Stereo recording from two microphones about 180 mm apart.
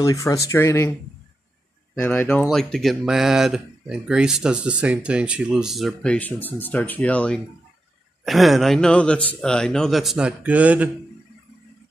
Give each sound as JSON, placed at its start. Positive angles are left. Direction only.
{"t": 0.0, "sound": "speech", "side_deg": 20}
{"t": 2.0, "sound": "speech", "side_deg": 10}
{"t": 2.5, "sound": "speech", "side_deg": 0}